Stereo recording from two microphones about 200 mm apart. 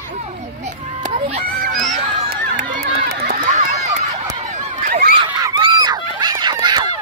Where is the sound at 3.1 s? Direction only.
50° right (ahead or behind).